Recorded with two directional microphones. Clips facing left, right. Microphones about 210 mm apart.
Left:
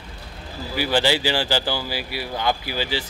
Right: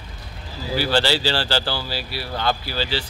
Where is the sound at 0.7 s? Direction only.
15° left (ahead or behind).